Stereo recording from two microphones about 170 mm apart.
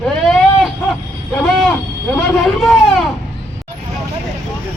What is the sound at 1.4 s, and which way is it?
A man's voice, centre (ahead or behind).